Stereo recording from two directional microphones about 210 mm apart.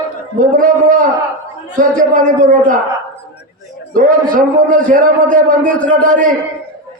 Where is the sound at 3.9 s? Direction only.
40° right (ahead or behind).